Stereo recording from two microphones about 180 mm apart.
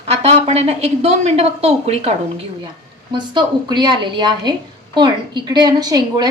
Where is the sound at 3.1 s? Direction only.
25° right (ahead or behind).